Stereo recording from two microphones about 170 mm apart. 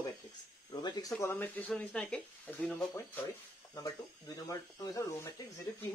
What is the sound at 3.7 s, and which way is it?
Speech, 20° left (ahead or behind).